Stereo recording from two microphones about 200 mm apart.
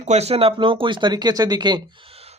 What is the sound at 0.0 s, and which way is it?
Speech, 35° right (ahead or behind).